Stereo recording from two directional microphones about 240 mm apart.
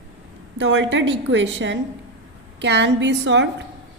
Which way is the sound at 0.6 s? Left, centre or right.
Right.